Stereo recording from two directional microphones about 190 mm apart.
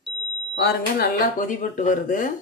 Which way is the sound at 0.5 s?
50° left (ahead or behind).